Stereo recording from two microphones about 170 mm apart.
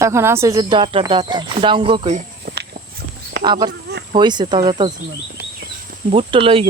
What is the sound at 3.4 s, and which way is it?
Speech, 25° right (ahead or behind).